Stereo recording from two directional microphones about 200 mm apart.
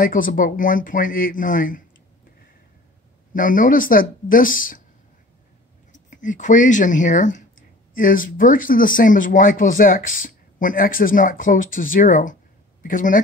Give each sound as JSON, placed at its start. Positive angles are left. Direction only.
{"t": 0.0, "sound": "speech", "side_deg": 45}
{"t": 3.3, "sound": "speech", "side_deg": 40}
{"t": 6.0, "sound": "speech", "side_deg": 40}